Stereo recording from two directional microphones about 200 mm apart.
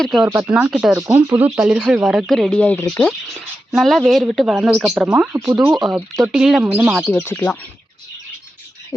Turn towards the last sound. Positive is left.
turn(degrees=10)  # may be behind; listen again after turning